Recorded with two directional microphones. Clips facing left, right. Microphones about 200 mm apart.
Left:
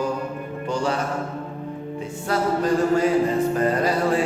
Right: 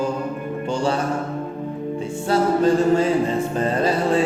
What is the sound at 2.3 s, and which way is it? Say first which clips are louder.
Music: right 4 dB; 25° right (ahead or behind).